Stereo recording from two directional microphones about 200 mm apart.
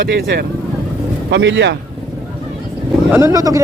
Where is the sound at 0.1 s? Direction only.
50° right (ahead or behind).